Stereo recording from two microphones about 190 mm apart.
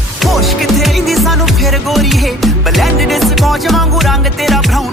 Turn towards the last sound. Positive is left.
turn(degrees=0)  # may be behind; listen again after turning